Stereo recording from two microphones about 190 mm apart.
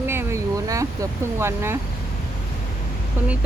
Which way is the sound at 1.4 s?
15° right (ahead or behind).